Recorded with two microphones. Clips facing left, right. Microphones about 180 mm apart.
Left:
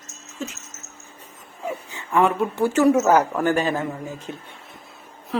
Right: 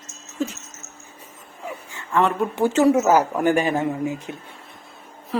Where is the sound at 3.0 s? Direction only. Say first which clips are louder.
Even; 10° right (ahead or behind).